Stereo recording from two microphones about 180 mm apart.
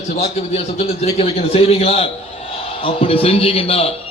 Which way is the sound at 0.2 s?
35° left (ahead or behind).